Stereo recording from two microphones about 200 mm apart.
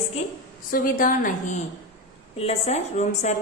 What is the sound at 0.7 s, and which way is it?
Speech, 45° left (ahead or behind).